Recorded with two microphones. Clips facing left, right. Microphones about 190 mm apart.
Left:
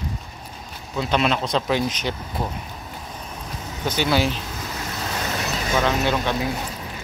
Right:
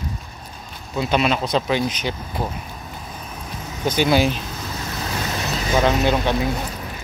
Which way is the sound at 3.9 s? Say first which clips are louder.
Right 4 dB; 15° right (ahead or behind).